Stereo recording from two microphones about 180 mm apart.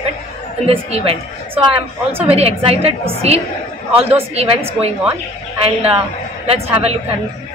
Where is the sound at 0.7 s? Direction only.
35° right (ahead or behind).